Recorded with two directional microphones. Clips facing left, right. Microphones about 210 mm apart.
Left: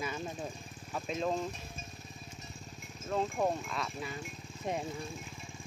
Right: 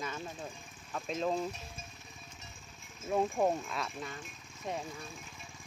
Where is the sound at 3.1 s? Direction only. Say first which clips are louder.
Right 2 dB; 10° right (ahead or behind).